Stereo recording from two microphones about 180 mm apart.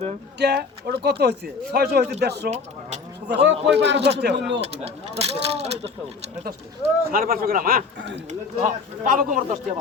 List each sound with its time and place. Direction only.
0.3 s speech: 65° right (ahead or behind)
4.6 s speech: 35° right (ahead or behind)
7.1 s speech: 55° right (ahead or behind)